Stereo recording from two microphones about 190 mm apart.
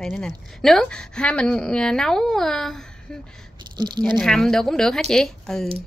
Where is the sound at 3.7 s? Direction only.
20° right (ahead or behind).